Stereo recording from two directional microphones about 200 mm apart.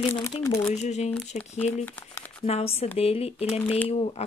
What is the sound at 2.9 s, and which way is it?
Speech, 30° left (ahead or behind).